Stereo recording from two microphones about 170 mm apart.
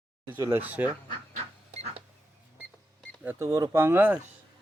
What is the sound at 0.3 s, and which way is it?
Speech, 15° right (ahead or behind).